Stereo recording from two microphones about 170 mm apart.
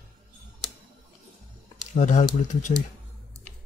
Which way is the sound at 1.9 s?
45° left (ahead or behind).